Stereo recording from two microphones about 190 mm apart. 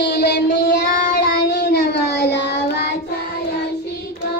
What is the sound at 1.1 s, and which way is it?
Music, 55° left (ahead or behind).